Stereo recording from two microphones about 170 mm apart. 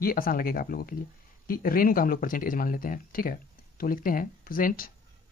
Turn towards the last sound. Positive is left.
turn(degrees=55)  # may be behind; listen again after turning